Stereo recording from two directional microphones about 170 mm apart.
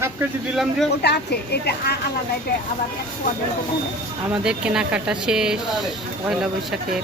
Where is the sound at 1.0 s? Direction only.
75° left (ahead or behind).